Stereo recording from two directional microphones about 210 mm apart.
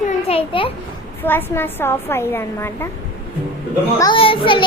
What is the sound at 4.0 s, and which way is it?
Speech, 25° left (ahead or behind).